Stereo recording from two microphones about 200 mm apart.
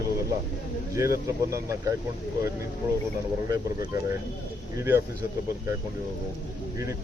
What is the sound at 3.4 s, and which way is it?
Speech, 15° right (ahead or behind).